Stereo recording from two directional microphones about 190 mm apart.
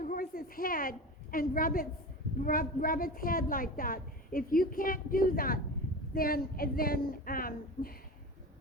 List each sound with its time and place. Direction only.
0.0 s a woman's voice: 50° left (ahead or behind)